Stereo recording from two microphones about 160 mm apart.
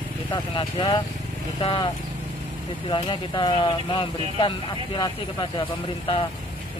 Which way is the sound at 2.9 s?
30° left (ahead or behind).